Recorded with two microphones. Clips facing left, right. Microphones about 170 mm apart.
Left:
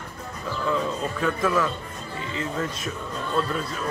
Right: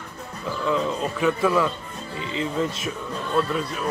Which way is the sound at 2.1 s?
20° right (ahead or behind).